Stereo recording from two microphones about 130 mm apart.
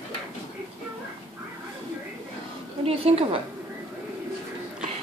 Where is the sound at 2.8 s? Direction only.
50° right (ahead or behind).